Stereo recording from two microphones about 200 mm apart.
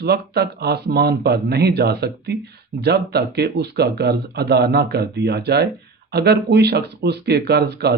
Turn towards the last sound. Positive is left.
turn(degrees=-55)  # may be behind; listen again after turning